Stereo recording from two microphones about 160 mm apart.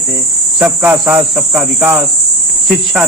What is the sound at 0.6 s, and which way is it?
Cricket, 10° right (ahead or behind).